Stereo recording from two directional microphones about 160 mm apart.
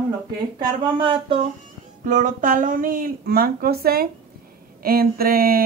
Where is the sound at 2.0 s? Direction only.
50° right (ahead or behind).